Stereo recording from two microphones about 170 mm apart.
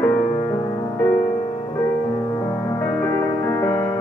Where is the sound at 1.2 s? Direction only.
45° left (ahead or behind).